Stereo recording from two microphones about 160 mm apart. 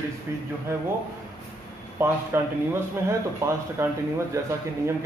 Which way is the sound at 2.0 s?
15° right (ahead or behind).